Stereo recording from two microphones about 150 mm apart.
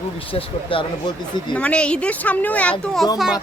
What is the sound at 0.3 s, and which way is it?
Speech, 35° left (ahead or behind).